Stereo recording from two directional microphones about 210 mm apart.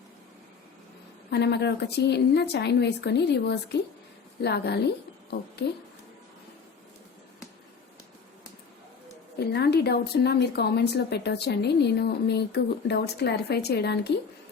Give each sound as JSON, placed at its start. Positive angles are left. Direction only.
{"t": 1.3, "sound": "a woman's voice", "side_deg": 55}
{"t": 9.4, "sound": "a woman's voice", "side_deg": 50}